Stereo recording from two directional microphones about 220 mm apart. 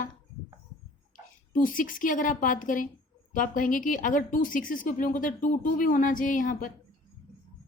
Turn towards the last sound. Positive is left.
turn(degrees=40)  # may be behind; listen again after turning